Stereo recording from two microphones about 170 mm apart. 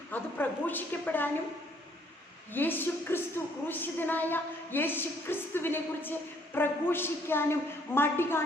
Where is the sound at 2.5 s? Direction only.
10° left (ahead or behind).